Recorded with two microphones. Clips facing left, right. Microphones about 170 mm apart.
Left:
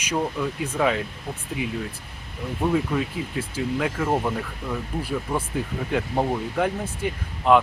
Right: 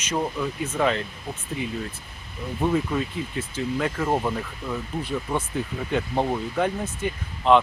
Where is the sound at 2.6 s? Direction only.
5° left (ahead or behind).